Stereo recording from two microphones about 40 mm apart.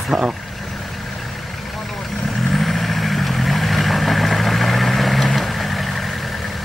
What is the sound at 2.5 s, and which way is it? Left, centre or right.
Vehicle, centre.